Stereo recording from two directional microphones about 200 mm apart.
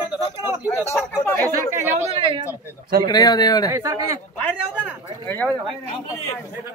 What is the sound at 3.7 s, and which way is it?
Speech, 15° right (ahead or behind).